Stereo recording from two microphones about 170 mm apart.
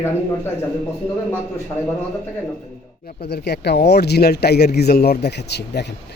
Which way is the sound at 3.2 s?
70° left (ahead or behind).